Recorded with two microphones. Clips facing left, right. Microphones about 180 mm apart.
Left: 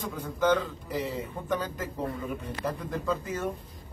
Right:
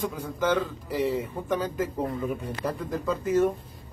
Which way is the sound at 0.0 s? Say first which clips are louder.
Even; 10° right (ahead or behind).